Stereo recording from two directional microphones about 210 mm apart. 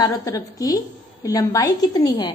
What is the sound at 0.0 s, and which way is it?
A woman's voice, 15° left (ahead or behind).